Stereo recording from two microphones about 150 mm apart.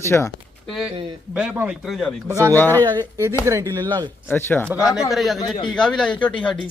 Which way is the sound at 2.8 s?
20° right (ahead or behind).